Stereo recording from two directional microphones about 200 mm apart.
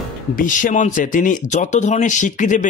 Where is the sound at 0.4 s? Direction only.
40° left (ahead or behind).